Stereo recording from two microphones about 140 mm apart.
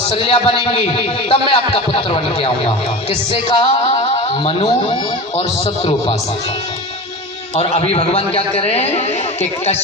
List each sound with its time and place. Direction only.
0.2 s a man's voice: 40° left (ahead or behind)
7.5 s speech: 45° left (ahead or behind)